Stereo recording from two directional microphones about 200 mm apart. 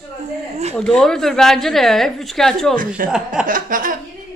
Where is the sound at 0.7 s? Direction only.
5° left (ahead or behind).